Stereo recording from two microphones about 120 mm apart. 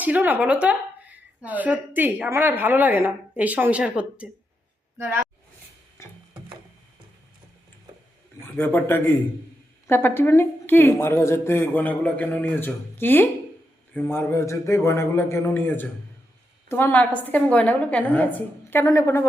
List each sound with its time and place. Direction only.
0.0 s a woman's voice: 15° right (ahead or behind)
4.9 s speech: 20° right (ahead or behind)
8.5 s a woman's voice: 20° left (ahead or behind)